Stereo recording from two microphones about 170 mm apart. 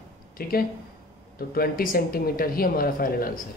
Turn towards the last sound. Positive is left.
turn(degrees=55)  # may be behind; listen again after turning